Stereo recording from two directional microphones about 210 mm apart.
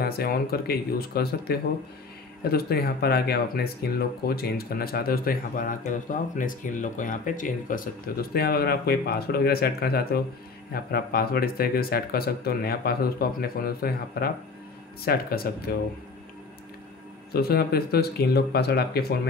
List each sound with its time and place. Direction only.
0.0 s speech: 45° left (ahead or behind)
17.3 s speech: 45° left (ahead or behind)